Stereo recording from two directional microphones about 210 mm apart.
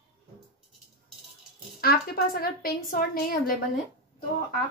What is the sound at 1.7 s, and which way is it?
A woman's voice, 45° left (ahead or behind).